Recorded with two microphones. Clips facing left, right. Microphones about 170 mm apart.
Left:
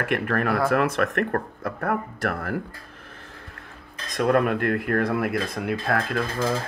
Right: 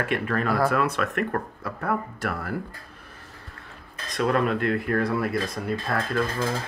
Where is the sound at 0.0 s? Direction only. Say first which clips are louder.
Left 1 dB; 55° left (ahead or behind).